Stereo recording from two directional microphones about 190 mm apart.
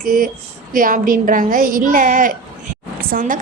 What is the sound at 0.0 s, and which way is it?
A woman's voice, 45° right (ahead or behind).